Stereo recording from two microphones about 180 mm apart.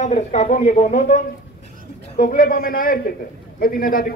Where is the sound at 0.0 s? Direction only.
40° left (ahead or behind).